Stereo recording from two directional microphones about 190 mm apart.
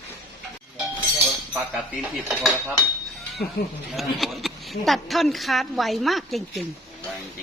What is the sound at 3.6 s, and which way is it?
Speech, 50° left (ahead or behind).